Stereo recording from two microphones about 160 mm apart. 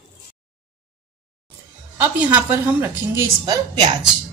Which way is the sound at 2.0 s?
10° right (ahead or behind).